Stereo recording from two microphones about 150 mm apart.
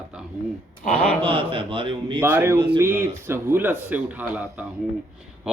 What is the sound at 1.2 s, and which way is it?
A man's voice, 40° right (ahead or behind).